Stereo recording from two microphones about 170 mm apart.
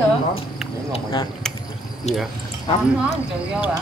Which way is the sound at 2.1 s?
40° left (ahead or behind).